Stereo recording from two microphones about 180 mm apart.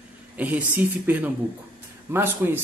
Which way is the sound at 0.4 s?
10° right (ahead or behind).